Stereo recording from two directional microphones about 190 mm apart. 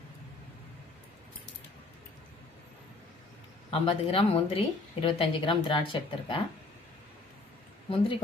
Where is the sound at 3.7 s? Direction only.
30° left (ahead or behind).